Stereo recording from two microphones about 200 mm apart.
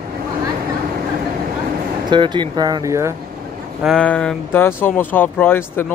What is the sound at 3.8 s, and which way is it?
Speech, 5° left (ahead or behind).